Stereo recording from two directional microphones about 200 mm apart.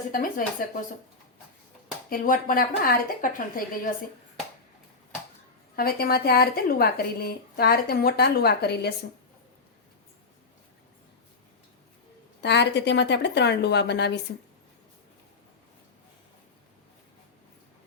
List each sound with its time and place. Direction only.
0.1 s speech: 45° left (ahead or behind)
2.0 s speech: 40° left (ahead or behind)
5.7 s speech: 50° left (ahead or behind)
12.4 s a woman's voice: 60° left (ahead or behind)